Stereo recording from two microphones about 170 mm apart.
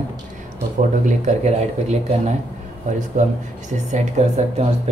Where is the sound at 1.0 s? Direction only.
45° right (ahead or behind).